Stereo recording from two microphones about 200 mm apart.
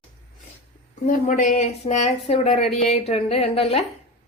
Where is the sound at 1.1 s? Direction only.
40° left (ahead or behind).